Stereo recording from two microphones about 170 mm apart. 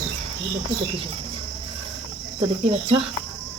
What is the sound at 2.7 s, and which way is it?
Speech, 35° right (ahead or behind).